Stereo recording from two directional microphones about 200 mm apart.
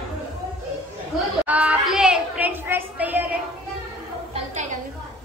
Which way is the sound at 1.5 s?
5° right (ahead or behind).